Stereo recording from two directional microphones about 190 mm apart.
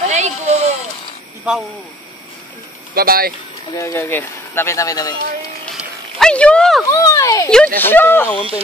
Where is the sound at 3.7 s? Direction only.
15° left (ahead or behind).